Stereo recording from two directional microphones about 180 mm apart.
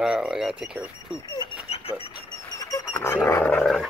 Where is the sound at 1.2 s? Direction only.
30° left (ahead or behind).